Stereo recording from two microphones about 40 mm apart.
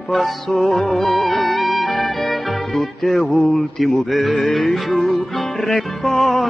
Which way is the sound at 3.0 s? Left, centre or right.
Centre.